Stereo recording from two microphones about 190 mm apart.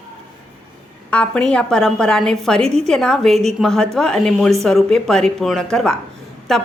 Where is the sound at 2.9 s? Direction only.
Centre (ahead or behind).